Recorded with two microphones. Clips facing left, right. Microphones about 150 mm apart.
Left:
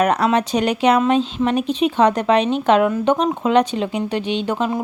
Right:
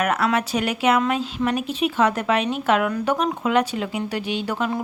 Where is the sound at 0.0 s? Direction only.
25° left (ahead or behind).